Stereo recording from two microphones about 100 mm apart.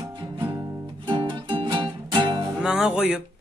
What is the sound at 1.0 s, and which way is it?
Music, 50° right (ahead or behind).